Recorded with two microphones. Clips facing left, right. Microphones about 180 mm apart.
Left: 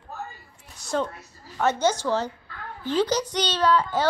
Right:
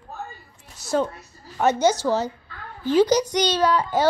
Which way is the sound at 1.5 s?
10° right (ahead or behind).